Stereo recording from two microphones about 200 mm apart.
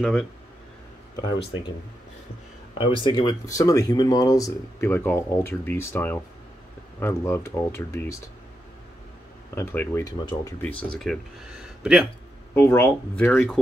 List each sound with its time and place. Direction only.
0.0 s speech: centre (ahead or behind)
2.8 s speech: 25° left (ahead or behind)
9.6 s speech: 10° left (ahead or behind)
11.0 s speech: centre (ahead or behind)
12.5 s speech: 10° left (ahead or behind)